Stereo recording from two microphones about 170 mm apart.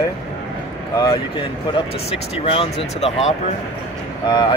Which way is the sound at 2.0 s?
35° left (ahead or behind).